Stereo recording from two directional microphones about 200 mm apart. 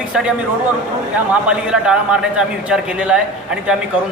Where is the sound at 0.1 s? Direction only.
5° right (ahead or behind).